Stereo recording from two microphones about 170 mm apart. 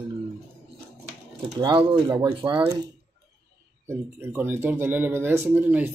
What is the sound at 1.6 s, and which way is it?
Speech, 25° right (ahead or behind).